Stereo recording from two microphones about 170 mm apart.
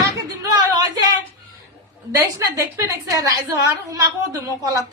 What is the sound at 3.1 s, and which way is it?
A woman's voice, 20° right (ahead or behind).